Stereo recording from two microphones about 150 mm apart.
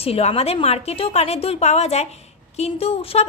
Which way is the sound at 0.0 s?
40° left (ahead or behind).